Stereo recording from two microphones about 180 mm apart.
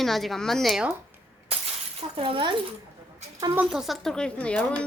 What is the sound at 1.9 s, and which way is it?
Speech, 35° right (ahead or behind).